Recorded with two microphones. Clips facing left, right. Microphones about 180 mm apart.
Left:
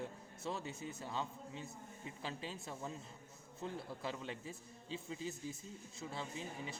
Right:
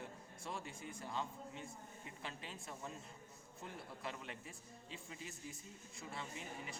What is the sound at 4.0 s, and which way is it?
Speech, 30° left (ahead or behind).